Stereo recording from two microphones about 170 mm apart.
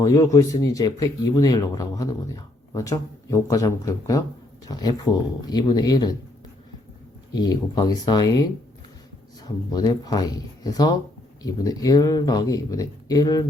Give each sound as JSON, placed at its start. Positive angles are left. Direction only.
{"t": 0.0, "sound": "speech", "side_deg": 20}
{"t": 7.3, "sound": "speech", "side_deg": 25}
{"t": 9.4, "sound": "speech", "side_deg": 25}